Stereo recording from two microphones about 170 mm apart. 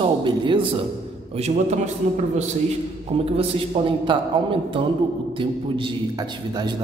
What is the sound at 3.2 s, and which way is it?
A man's voice, 35° right (ahead or behind).